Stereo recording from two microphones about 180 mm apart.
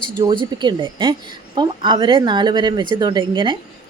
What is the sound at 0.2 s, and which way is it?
Speech, 25° right (ahead or behind).